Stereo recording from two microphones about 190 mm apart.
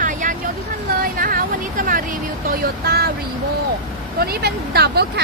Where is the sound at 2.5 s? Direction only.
55° right (ahead or behind).